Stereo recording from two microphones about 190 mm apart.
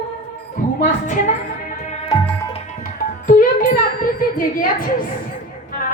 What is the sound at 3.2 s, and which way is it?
Music, 45° left (ahead or behind).